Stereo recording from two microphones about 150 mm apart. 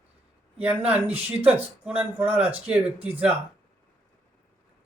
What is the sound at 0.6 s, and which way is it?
Speech, 10° right (ahead or behind).